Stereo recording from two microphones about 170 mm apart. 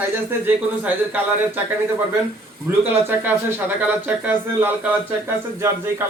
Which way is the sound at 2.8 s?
10° right (ahead or behind).